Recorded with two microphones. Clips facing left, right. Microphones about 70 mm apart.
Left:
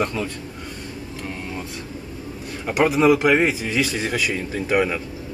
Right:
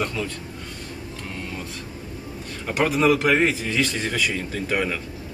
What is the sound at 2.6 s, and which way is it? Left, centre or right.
A man's voice, centre.